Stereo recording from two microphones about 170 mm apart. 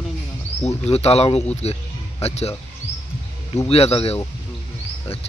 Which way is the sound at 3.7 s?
35° left (ahead or behind).